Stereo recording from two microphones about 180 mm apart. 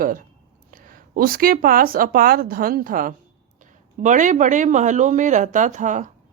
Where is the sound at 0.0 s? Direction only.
50° right (ahead or behind).